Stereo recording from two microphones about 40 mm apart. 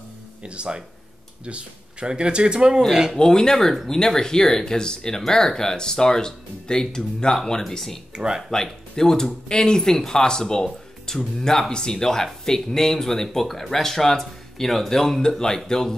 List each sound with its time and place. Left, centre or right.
0.4 s speech: right
2.9 s speech: centre
3.2 s speech: centre
8.1 s speech: right
8.9 s speech: centre